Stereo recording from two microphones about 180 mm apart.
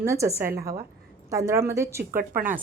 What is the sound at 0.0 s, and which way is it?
A woman's voice, 15° right (ahead or behind).